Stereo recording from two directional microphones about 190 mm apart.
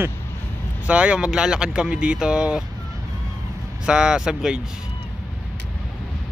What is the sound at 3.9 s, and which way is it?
Speech, 5° right (ahead or behind).